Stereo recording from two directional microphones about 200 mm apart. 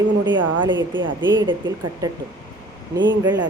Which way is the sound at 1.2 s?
25° right (ahead or behind).